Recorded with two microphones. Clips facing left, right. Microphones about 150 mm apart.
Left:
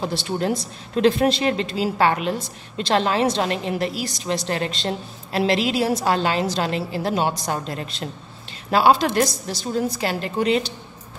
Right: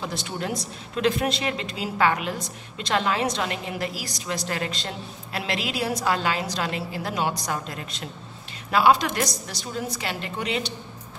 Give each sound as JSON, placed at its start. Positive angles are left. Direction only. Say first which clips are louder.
{"t": 0.0, "sound": "a woman's voice", "louder": "left 7 dB", "side_deg": 30}